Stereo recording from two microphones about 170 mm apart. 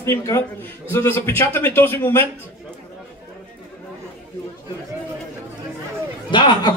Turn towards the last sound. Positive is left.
turn(degrees=25)  # may be behind; listen again after turning